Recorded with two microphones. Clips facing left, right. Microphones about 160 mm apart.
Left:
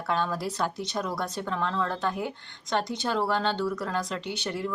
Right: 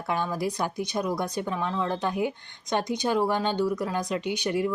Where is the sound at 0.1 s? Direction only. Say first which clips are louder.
Right 1 dB; 15° right (ahead or behind).